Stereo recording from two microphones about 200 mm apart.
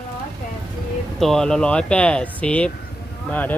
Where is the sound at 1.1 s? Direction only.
Centre (ahead or behind).